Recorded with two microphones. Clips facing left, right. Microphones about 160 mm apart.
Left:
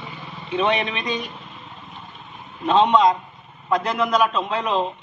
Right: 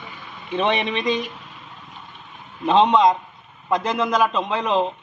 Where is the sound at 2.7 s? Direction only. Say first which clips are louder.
Right 1 dB; 20° right (ahead or behind).